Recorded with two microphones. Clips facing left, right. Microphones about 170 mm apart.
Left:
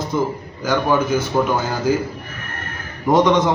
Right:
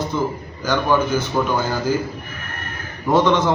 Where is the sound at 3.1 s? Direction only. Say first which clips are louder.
Left 1 dB; 15° left (ahead or behind).